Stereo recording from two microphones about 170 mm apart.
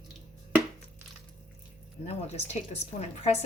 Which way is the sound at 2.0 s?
40° left (ahead or behind).